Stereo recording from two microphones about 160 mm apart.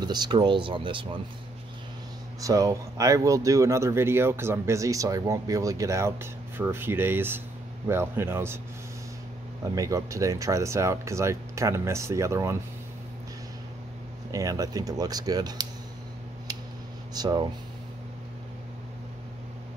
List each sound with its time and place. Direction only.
0.0 s speech: 25° right (ahead or behind)
2.4 s speech: 20° right (ahead or behind)
9.8 s speech: 20° right (ahead or behind)
14.3 s speech: 20° right (ahead or behind)
17.1 s speech: 25° right (ahead or behind)